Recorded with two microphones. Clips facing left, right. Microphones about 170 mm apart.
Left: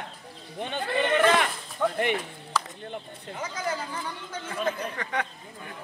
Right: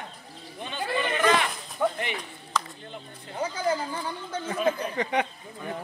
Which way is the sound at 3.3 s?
30° right (ahead or behind).